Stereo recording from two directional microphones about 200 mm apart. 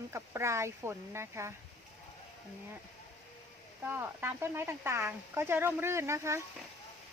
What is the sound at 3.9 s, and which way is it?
Speech, 10° right (ahead or behind).